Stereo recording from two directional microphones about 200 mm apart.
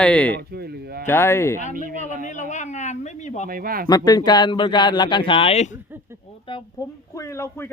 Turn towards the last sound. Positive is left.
turn(degrees=15)  # may be behind; listen again after turning